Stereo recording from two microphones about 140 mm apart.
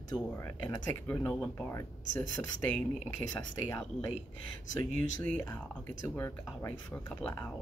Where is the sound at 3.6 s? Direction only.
20° left (ahead or behind).